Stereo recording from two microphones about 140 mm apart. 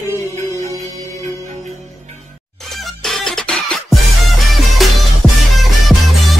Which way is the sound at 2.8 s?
5° left (ahead or behind).